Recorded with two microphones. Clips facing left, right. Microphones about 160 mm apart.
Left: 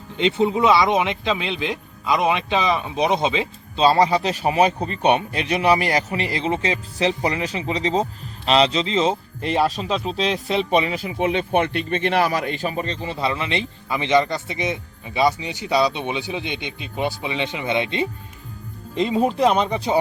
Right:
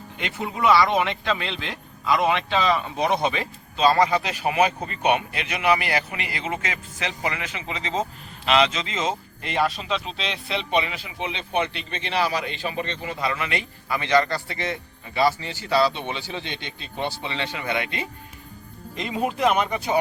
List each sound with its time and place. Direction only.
0.2 s speech: 25° left (ahead or behind)
3.8 s speech: 30° left (ahead or behind)